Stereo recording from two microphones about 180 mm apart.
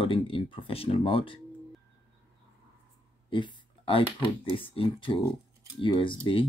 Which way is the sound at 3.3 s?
25° left (ahead or behind).